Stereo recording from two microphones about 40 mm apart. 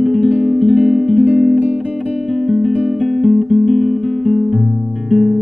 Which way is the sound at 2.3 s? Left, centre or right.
Centre.